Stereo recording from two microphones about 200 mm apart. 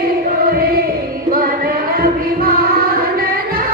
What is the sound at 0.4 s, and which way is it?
Choir, 50° right (ahead or behind).